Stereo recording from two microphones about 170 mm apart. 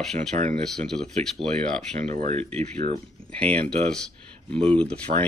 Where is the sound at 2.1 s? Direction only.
40° right (ahead or behind).